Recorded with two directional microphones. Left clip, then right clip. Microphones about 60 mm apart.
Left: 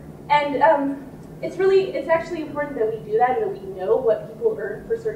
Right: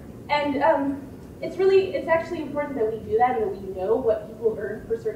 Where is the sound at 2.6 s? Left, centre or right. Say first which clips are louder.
Left 2 dB; centre.